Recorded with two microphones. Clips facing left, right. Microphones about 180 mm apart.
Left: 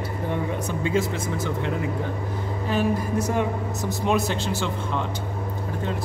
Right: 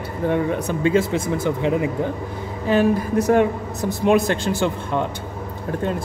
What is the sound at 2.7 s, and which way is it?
Speech, 65° right (ahead or behind).